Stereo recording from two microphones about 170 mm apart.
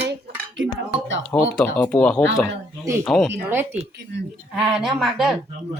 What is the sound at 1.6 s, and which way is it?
Speech, 10° left (ahead or behind).